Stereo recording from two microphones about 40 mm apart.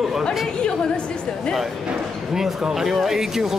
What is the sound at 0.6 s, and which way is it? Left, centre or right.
Speech, left.